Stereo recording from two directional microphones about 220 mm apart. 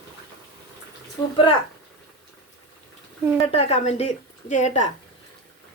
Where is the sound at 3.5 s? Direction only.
30° left (ahead or behind).